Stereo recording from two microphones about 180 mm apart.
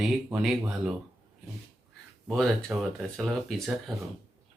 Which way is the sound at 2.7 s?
5° right (ahead or behind).